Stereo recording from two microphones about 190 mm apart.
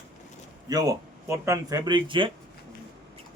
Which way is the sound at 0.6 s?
20° right (ahead or behind).